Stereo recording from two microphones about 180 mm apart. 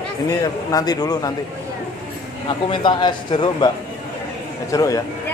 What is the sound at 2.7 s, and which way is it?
Speech, 25° left (ahead or behind).